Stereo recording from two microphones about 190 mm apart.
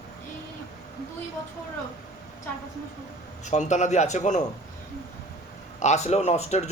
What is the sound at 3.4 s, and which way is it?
Speech, 40° left (ahead or behind).